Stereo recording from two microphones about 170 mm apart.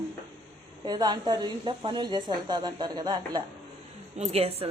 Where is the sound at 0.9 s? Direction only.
25° right (ahead or behind).